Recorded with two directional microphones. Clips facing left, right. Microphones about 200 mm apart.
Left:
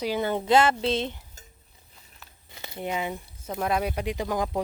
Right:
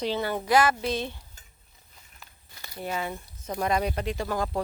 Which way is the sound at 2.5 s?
20° left (ahead or behind).